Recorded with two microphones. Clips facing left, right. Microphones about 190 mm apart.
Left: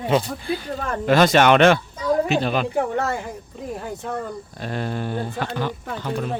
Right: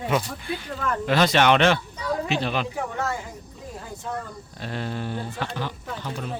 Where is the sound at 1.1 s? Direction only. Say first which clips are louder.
Left 4 dB; 45° left (ahead or behind).